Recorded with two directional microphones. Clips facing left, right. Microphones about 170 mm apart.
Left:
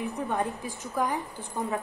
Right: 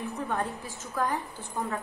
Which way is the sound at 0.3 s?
15° left (ahead or behind).